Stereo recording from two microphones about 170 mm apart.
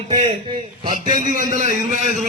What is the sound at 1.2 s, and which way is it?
Speech, 50° right (ahead or behind).